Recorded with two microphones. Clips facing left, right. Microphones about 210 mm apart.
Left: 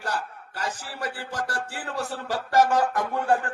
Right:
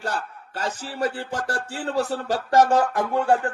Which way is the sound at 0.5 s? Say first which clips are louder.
Right 4 dB; 25° right (ahead or behind).